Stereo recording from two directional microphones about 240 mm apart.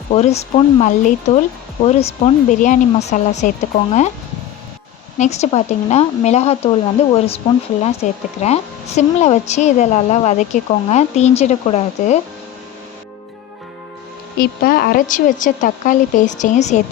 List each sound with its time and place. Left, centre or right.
0.1 s speech: left
5.1 s speech: left
14.3 s speech: left